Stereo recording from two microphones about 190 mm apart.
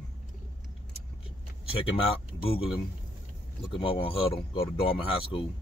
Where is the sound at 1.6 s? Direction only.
30° left (ahead or behind).